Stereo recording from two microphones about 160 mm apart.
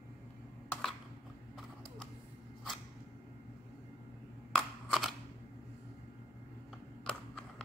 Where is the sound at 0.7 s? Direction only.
Centre (ahead or behind).